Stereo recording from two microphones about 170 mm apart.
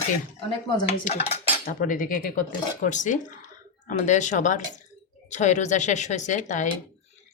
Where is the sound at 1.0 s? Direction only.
40° left (ahead or behind).